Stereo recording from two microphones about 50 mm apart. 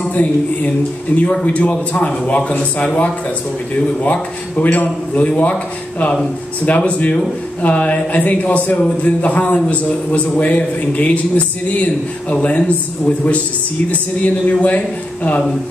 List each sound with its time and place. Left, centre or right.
0.1 s a man's voice: left